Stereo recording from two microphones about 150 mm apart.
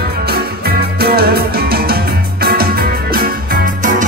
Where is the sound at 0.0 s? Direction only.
90° right.